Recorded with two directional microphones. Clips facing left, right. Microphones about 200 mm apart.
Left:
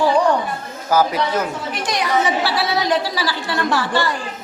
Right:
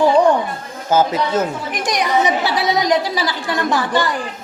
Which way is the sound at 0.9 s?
25° right (ahead or behind).